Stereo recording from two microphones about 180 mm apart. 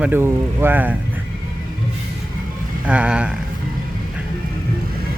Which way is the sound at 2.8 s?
5° right (ahead or behind).